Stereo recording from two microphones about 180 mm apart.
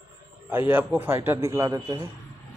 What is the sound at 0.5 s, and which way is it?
A man's voice, 10° right (ahead or behind).